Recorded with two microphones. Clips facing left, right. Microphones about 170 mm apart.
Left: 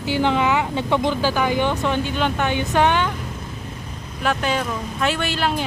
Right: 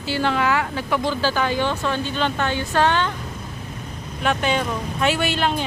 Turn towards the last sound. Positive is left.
turn(degrees=0)  # may be behind; listen again after turning